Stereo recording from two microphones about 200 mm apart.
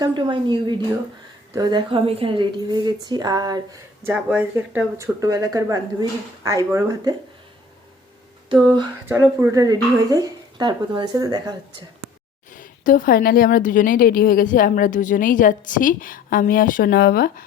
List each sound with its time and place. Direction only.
0.0 s a woman's voice: 20° right (ahead or behind)
4.1 s speech: 5° right (ahead or behind)
9.0 s a woman's voice: 10° right (ahead or behind)
12.5 s a woman's voice: 40° left (ahead or behind)